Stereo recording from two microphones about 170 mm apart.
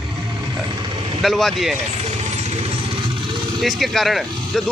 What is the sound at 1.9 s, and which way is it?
Vehicle, 40° right (ahead or behind).